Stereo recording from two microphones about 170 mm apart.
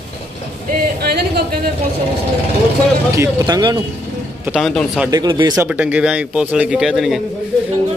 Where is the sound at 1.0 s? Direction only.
70° right (ahead or behind).